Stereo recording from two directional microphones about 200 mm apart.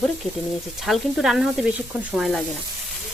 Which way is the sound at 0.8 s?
Centre (ahead or behind).